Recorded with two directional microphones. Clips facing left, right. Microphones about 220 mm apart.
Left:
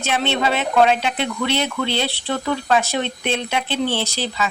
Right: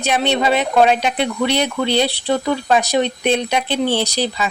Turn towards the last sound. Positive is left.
turn(degrees=-15)  # may be behind; listen again after turning